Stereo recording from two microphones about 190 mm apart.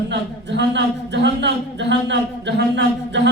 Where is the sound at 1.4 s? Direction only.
65° right (ahead or behind).